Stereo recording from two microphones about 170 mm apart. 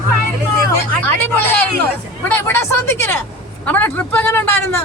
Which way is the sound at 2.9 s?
15° left (ahead or behind).